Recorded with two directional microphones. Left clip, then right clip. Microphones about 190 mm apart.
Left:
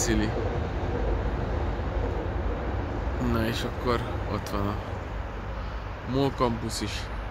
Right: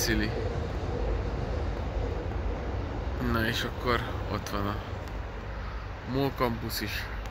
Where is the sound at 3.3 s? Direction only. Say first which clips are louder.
Right 1 dB; 10° left (ahead or behind).